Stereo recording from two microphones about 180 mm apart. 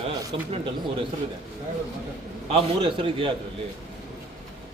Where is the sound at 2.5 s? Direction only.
30° right (ahead or behind).